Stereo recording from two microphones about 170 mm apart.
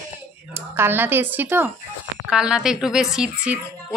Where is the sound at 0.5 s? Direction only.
15° right (ahead or behind).